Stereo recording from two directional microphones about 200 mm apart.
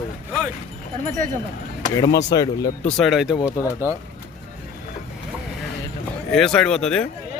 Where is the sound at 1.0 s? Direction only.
40° right (ahead or behind).